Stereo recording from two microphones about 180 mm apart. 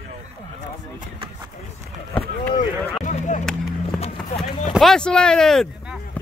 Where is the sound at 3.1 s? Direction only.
45° left (ahead or behind).